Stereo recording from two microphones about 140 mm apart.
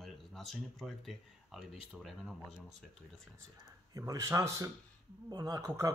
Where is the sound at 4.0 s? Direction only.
25° right (ahead or behind).